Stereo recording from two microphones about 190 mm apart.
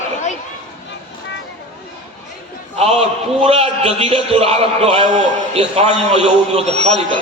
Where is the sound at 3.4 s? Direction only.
30° right (ahead or behind).